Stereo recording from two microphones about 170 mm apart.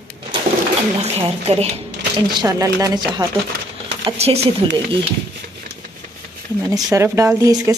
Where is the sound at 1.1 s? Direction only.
40° right (ahead or behind).